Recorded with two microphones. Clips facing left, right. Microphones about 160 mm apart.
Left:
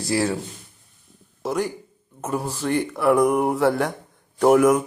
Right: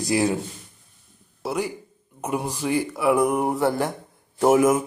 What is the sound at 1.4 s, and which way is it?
Speech, 10° right (ahead or behind).